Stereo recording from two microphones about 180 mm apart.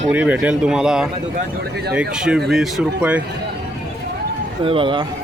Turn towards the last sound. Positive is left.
turn(degrees=-30)  # may be behind; listen again after turning